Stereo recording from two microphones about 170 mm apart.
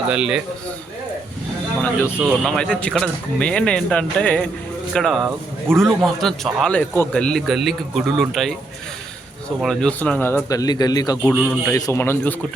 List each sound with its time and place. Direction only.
0.1 s a man's voice: 5° right (ahead or behind)
1.8 s a man's voice: 10° left (ahead or behind)
2.1 s a man's voice: centre (ahead or behind)
9.6 s a man's voice: 5° left (ahead or behind); by 11.2 s 20° left (ahead or behind)
11.2 s a man's voice: 5° left (ahead or behind)